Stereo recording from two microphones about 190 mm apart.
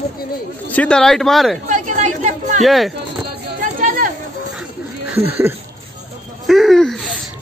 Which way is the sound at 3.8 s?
45° right (ahead or behind).